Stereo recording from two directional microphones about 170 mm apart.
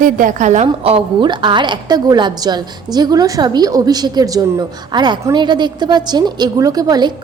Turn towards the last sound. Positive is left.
turn(degrees=-25)  # may be behind; listen again after turning